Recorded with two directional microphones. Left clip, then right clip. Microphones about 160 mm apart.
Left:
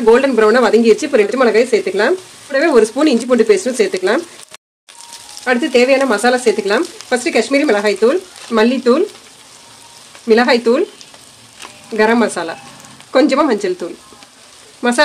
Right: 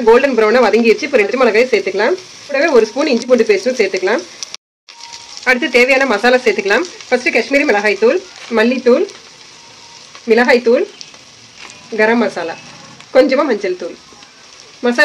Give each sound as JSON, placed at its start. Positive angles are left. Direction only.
{"t": 0.1, "sound": "speech", "side_deg": 30}
{"t": 5.4, "sound": "speech", "side_deg": 20}
{"t": 10.2, "sound": "speech", "side_deg": 45}
{"t": 12.0, "sound": "speech", "side_deg": 50}